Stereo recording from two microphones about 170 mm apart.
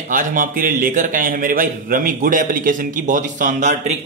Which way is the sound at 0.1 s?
50° right (ahead or behind).